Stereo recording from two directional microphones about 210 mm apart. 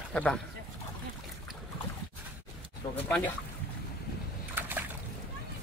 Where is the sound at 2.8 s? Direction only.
20° left (ahead or behind).